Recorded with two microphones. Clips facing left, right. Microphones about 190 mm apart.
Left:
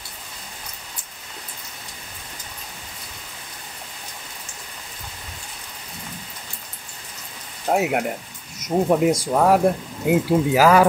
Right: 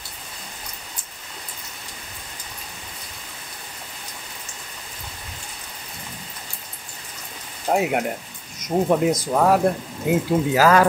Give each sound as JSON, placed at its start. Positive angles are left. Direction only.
{"t": 7.6, "sound": "speech", "side_deg": 5}